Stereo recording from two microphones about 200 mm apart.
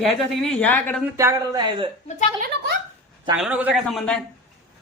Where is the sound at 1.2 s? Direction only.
15° right (ahead or behind).